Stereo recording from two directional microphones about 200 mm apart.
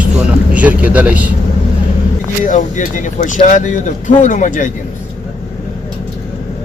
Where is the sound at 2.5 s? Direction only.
40° left (ahead or behind).